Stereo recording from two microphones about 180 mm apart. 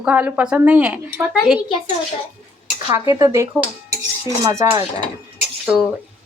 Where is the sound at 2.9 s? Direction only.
15° right (ahead or behind).